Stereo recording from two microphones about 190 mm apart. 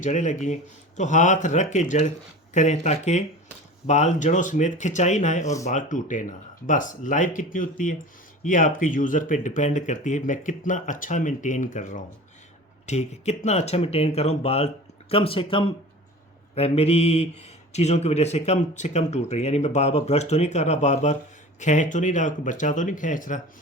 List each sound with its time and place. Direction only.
0.0 s speech: 40° left (ahead or behind)